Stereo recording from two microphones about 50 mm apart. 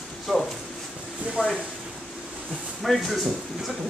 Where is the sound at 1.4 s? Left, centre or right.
Right.